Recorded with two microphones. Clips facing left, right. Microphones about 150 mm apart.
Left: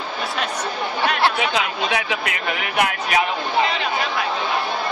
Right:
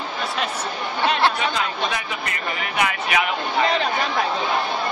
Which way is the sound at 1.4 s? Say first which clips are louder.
Left 1 dB; 75° left (ahead or behind).